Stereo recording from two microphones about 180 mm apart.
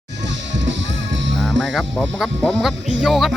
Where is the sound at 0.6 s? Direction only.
90° right.